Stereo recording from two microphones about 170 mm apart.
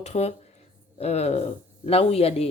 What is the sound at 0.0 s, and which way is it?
Speech, 40° left (ahead or behind).